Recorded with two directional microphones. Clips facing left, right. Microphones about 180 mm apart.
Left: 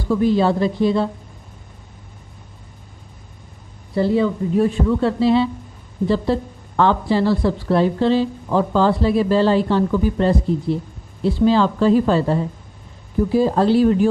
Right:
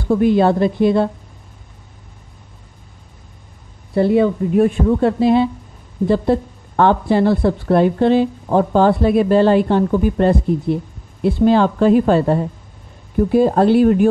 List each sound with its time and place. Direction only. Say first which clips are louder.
0.0 s speech: right 3 dB; 55° right (ahead or behind)
3.9 s speech: right 4 dB; 55° right (ahead or behind)